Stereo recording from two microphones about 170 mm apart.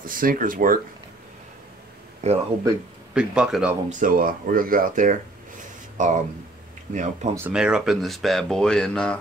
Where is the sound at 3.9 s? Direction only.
50° right (ahead or behind).